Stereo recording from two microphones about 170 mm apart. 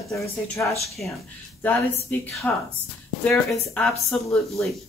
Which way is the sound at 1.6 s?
10° left (ahead or behind).